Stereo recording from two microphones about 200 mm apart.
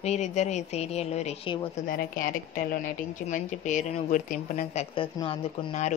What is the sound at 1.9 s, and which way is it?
Speech, 45° left (ahead or behind).